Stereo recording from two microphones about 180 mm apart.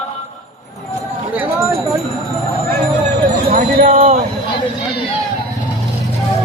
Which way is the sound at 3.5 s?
45° right (ahead or behind).